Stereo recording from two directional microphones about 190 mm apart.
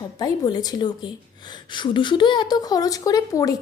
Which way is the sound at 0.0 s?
20° left (ahead or behind).